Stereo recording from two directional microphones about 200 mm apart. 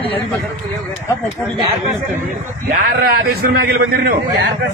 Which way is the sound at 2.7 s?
45° right (ahead or behind).